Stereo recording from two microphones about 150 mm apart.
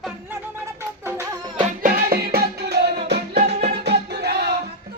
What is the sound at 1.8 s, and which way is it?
Music, 85° right.